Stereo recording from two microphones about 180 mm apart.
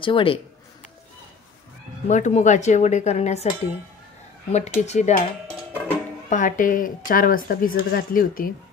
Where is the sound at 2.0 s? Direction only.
40° left (ahead or behind).